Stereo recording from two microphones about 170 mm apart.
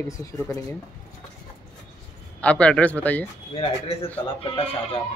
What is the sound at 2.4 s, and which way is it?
Speech, 5° left (ahead or behind).